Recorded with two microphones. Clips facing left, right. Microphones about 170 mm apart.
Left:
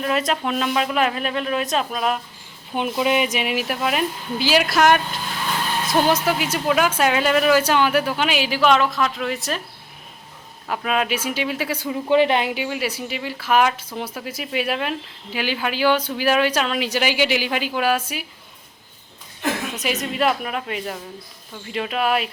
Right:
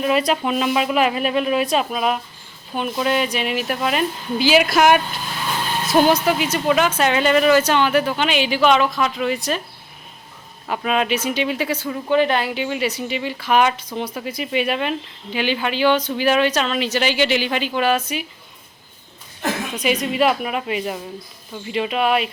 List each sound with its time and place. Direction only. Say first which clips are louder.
0.0 s speech: right 3 dB; 5° right (ahead or behind)
2.9 s speech: even; 15° left (ahead or behind)
10.7 s speech: right 2 dB; centre (ahead or behind)
12.0 s a woman's voice: left 1 dB; 25° left (ahead or behind)
12.6 s speech: right 3 dB; 5° left (ahead or behind)
19.7 s speech: right 4 dB; 5° left (ahead or behind)